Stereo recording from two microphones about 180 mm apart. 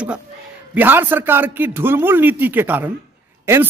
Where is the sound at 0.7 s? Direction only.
10° right (ahead or behind).